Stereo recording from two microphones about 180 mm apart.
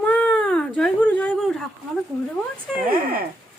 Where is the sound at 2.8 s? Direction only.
55° right (ahead or behind).